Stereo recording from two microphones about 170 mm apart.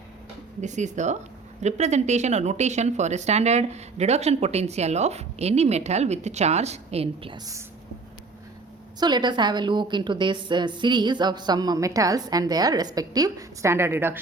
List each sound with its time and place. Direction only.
0.6 s a woman's voice: 45° right (ahead or behind); by 7.6 s 20° right (ahead or behind)
9.0 s a woman's voice: 25° right (ahead or behind)